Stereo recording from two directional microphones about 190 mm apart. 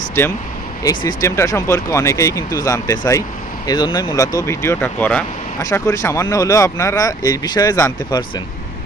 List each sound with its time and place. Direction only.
0.2 s speech: 15° left (ahead or behind)